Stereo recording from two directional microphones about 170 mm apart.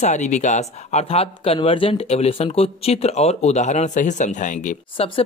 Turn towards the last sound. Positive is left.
turn(degrees=45)  # may be behind; listen again after turning